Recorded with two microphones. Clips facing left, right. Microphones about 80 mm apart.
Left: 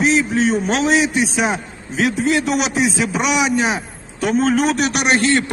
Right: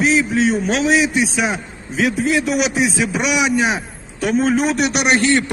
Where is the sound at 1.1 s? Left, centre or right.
Centre.